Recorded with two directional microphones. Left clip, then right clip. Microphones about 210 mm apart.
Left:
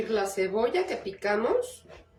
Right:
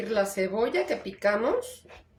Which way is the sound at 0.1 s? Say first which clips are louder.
Right 2 dB; 45° right (ahead or behind).